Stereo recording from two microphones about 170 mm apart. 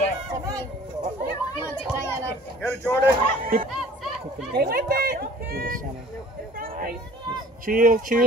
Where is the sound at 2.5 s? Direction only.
10° left (ahead or behind).